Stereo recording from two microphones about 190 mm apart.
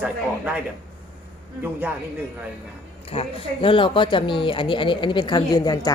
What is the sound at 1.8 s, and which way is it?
Speech, 10° right (ahead or behind).